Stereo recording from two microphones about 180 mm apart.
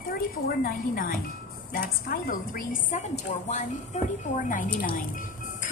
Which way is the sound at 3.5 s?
40° left (ahead or behind).